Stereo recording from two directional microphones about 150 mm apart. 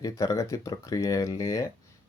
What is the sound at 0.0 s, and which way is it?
Speech, 20° left (ahead or behind).